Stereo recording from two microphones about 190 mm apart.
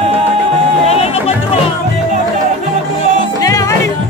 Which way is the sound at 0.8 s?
30° left (ahead or behind).